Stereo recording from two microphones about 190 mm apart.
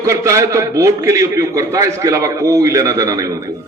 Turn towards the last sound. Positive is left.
turn(degrees=-15)  # may be behind; listen again after turning